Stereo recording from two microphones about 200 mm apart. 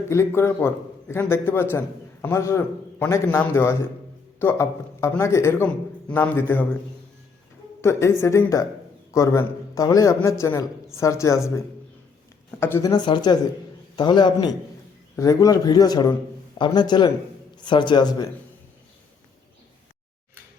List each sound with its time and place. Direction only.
0.1 s a man's voice: 15° left (ahead or behind)
7.8 s a woman's voice: 15° left (ahead or behind)
12.5 s a man's voice: 10° left (ahead or behind)